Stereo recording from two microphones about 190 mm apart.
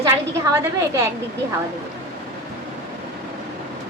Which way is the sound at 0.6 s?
15° right (ahead or behind).